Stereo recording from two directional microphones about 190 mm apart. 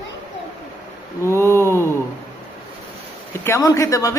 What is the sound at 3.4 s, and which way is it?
Speech, 15° left (ahead or behind).